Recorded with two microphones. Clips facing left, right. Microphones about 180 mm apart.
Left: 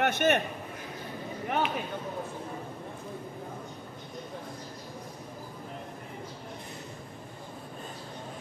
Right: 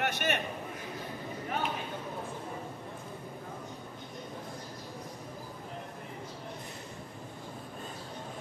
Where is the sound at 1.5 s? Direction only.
75° left (ahead or behind).